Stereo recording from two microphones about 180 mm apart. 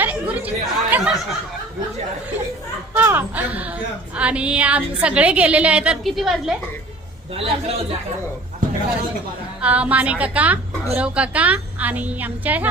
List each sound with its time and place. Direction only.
0.0 s chatter: 10° right (ahead or behind)
2.9 s a sound: 10° right (ahead or behind)
4.2 s a woman's voice: 5° right (ahead or behind)
7.3 s a man's voice: 35° right (ahead or behind)
9.6 s a woman's voice: 5° right (ahead or behind)